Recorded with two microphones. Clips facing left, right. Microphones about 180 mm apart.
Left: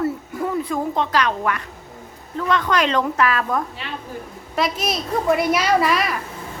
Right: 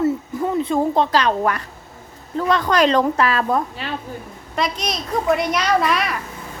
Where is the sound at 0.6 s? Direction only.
30° right (ahead or behind).